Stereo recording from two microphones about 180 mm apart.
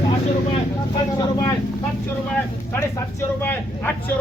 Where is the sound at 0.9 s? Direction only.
20° left (ahead or behind).